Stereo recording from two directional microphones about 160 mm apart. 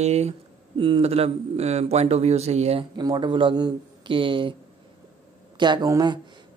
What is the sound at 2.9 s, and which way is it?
Speech, 25° right (ahead or behind).